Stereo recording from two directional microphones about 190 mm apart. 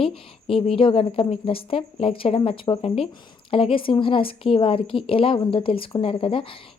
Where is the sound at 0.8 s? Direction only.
30° left (ahead or behind).